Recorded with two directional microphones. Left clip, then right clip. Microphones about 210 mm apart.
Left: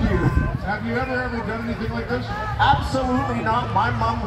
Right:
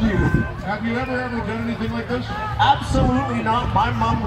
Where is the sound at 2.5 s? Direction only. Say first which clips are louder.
Right 1 dB; 20° right (ahead or behind).